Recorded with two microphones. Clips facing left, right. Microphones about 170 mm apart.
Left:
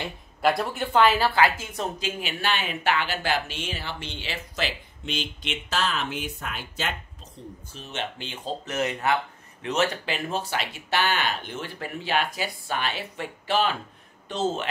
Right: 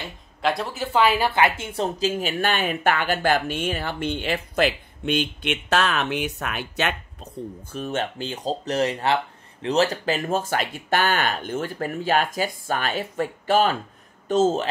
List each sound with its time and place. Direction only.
0.4 s speech: centre (ahead or behind); by 7.0 s 70° right (ahead or behind)
7.7 s speech: 50° right (ahead or behind)